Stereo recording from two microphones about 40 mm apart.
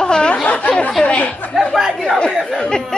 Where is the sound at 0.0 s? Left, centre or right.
Left.